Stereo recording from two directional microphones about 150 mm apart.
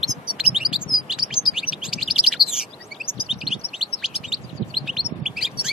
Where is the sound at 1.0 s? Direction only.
5° right (ahead or behind).